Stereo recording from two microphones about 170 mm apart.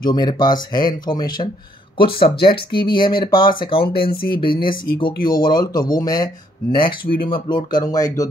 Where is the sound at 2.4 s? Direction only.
30° left (ahead or behind).